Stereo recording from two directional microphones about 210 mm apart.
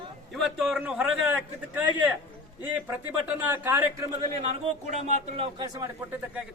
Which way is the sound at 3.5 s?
10° right (ahead or behind).